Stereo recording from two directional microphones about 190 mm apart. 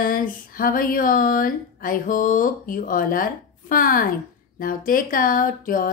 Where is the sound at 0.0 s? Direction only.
45° left (ahead or behind).